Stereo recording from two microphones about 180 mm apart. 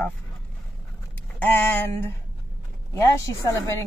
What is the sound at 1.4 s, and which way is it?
Speech, 10° left (ahead or behind).